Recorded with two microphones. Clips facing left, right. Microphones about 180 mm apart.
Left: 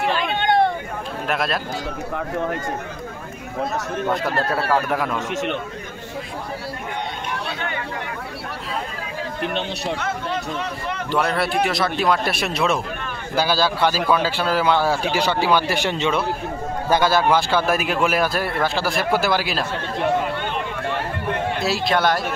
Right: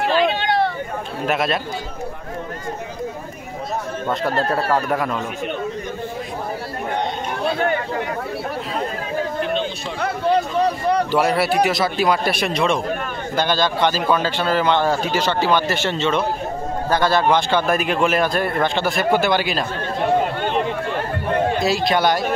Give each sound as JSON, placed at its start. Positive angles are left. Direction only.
{"t": 0.2, "sound": "hubbub", "side_deg": 50}
{"t": 1.2, "sound": "speech", "side_deg": 0}
{"t": 4.5, "sound": "a man's voice", "side_deg": 0}
{"t": 7.4, "sound": "speech", "side_deg": -40}
{"t": 9.9, "sound": "speech", "side_deg": -35}
{"t": 11.1, "sound": "a man's voice", "side_deg": -5}
{"t": 21.6, "sound": "a man's voice", "side_deg": 0}